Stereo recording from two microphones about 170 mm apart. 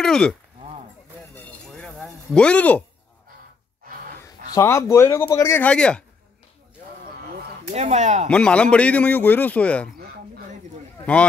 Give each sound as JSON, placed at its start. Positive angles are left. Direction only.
{"t": 0.0, "sound": "speech", "side_deg": 5}
{"t": 1.3, "sound": "a sound", "side_deg": 5}
{"t": 4.2, "sound": "speech", "side_deg": 15}
{"t": 7.7, "sound": "speech", "side_deg": -40}
{"t": 8.3, "sound": "a man's voice", "side_deg": 5}